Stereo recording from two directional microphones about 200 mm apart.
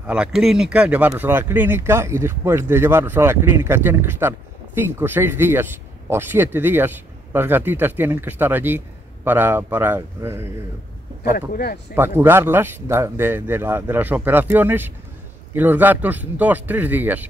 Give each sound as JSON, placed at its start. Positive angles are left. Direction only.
{"t": 0.0, "sound": "speech", "side_deg": -5}
{"t": 11.2, "sound": "speech", "side_deg": 50}
{"t": 11.9, "sound": "speech", "side_deg": -10}